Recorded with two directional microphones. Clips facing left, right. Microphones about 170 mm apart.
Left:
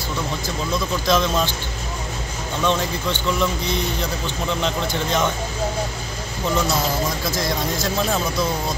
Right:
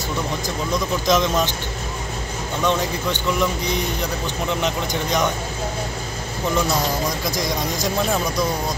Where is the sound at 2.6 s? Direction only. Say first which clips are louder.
Even; 15° right (ahead or behind).